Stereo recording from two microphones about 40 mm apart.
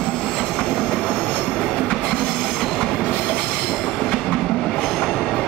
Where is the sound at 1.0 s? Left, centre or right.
Centre.